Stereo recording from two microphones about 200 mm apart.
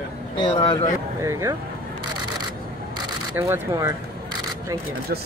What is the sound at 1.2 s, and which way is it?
Speech, 15° right (ahead or behind).